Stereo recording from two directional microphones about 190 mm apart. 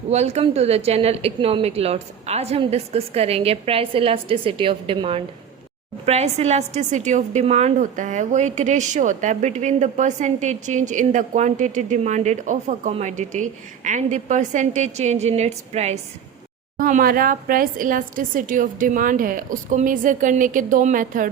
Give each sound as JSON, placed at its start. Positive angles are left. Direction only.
{"t": 0.1, "sound": "a woman's voice", "side_deg": -35}
{"t": 16.7, "sound": "a woman's voice", "side_deg": -45}